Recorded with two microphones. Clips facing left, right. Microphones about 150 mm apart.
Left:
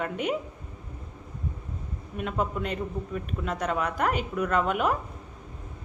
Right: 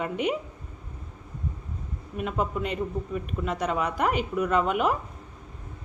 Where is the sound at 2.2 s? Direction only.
Centre (ahead or behind).